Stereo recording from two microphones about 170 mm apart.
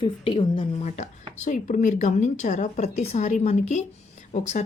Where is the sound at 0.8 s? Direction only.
40° left (ahead or behind).